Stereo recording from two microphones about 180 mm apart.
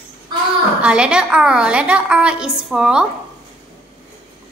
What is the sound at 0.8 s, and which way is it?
A woman's voice, 5° right (ahead or behind).